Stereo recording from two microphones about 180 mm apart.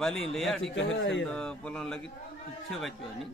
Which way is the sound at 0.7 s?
90° left.